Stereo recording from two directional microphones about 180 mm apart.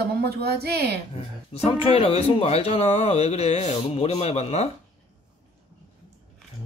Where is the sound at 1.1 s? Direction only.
35° left (ahead or behind).